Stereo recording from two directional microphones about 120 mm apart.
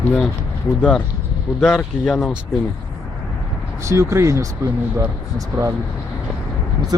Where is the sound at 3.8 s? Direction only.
25° right (ahead or behind).